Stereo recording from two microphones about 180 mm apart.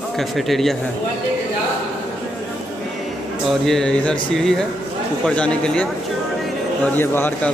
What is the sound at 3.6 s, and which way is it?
Speech, 5° left (ahead or behind).